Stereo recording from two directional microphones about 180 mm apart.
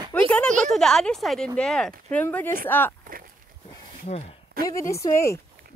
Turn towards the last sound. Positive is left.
turn(degrees=15)  # may be behind; listen again after turning